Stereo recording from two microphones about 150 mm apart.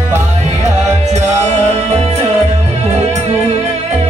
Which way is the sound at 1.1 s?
45° right (ahead or behind).